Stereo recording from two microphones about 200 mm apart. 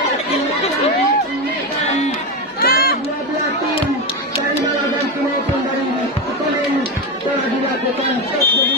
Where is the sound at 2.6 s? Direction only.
50° left (ahead or behind).